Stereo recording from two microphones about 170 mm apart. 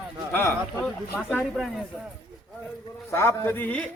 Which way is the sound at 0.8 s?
5° right (ahead or behind).